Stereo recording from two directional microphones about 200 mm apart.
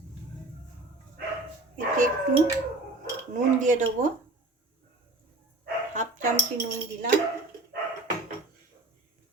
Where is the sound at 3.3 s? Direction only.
40° right (ahead or behind).